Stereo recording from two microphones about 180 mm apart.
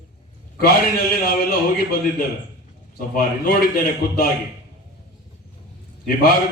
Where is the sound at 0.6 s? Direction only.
55° left (ahead or behind).